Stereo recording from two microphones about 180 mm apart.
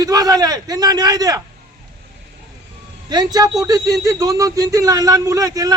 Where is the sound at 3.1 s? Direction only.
20° right (ahead or behind).